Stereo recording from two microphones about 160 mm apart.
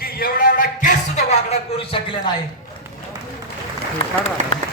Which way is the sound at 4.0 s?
35° left (ahead or behind).